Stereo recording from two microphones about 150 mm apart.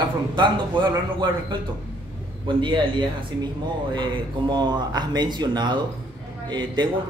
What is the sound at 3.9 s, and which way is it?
A man's voice, 30° right (ahead or behind).